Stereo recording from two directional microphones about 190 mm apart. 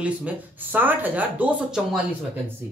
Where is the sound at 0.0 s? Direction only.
10° right (ahead or behind).